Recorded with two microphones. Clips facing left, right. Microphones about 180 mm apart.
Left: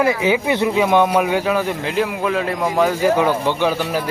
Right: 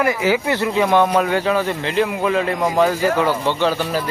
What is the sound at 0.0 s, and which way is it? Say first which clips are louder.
A man's voice: left 1 dB; 20° left (ahead or behind).